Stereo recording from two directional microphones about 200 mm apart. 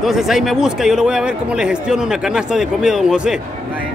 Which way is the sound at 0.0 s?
Centre (ahead or behind).